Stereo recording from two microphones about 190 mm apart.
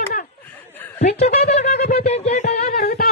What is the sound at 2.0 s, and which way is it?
Music, 35° left (ahead or behind).